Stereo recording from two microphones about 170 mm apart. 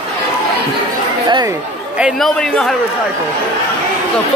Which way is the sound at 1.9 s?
Centre (ahead or behind).